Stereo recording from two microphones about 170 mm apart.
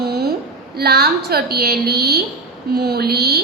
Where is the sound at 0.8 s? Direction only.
70° right (ahead or behind).